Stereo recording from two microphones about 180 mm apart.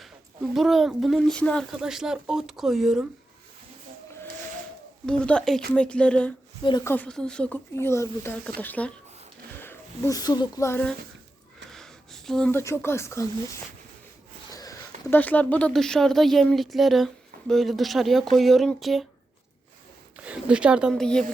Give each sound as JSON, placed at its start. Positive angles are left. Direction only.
{"t": 0.5, "sound": "speech", "side_deg": 0}
{"t": 5.0, "sound": "speech", "side_deg": 5}
{"t": 11.7, "sound": "a sound", "side_deg": 0}
{"t": 12.5, "sound": "speech", "side_deg": 15}
{"t": 14.5, "sound": "speech", "side_deg": 20}
{"t": 20.2, "sound": "speech", "side_deg": -5}